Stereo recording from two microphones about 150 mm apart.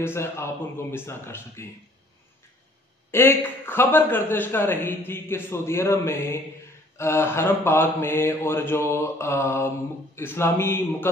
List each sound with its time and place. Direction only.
0.0 s a man's voice: 15° left (ahead or behind)
3.1 s a man's voice: 15° left (ahead or behind)